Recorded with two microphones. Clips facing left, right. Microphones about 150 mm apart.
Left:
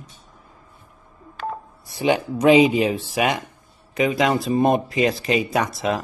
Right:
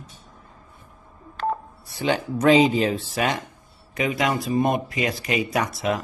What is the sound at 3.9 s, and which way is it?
Speech, 25° left (ahead or behind).